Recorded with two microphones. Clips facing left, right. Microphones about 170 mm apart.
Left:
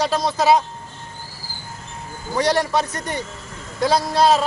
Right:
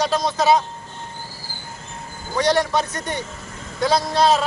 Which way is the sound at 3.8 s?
5° left (ahead or behind).